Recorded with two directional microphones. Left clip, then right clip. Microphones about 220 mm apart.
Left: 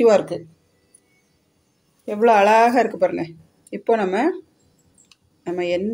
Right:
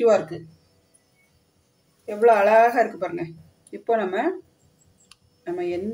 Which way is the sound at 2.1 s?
45° left (ahead or behind).